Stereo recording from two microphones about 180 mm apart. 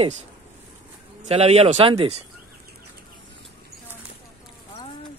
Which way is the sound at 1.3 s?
35° right (ahead or behind).